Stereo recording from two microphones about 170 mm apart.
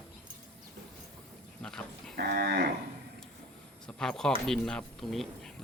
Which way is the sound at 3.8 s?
5° left (ahead or behind).